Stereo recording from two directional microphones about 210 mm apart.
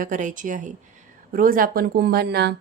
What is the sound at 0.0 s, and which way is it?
A woman's voice, 35° right (ahead or behind).